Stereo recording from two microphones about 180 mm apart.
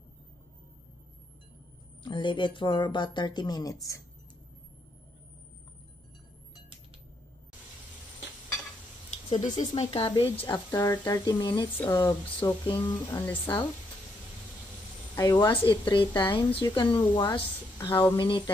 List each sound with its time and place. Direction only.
2.0 s a woman's voice: 25° left (ahead or behind)
9.3 s speech: 40° left (ahead or behind)
10.4 s a woman's voice: 20° left (ahead or behind)
15.1 s a woman's voice: 20° left (ahead or behind)